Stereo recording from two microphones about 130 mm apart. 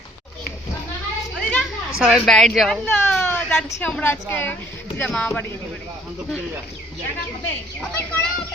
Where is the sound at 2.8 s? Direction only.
15° left (ahead or behind).